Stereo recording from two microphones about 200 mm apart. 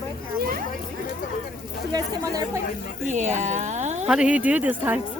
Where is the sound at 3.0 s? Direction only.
35° right (ahead or behind).